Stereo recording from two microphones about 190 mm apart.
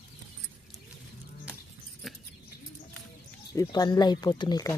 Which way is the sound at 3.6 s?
20° left (ahead or behind).